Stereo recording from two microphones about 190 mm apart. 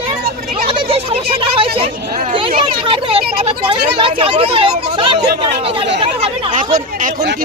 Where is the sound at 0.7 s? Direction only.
30° right (ahead or behind).